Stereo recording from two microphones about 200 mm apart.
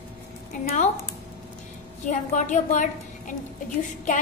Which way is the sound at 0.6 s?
35° left (ahead or behind).